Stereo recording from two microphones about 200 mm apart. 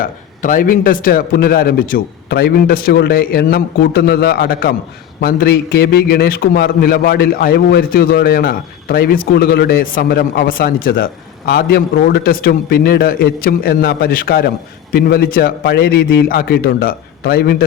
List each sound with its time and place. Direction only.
0.0 s a man's voice: 45° left (ahead or behind)